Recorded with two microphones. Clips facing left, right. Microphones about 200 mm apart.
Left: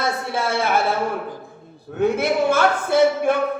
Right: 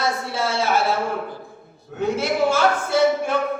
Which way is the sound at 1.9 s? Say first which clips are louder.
Left 2 dB; 55° left (ahead or behind).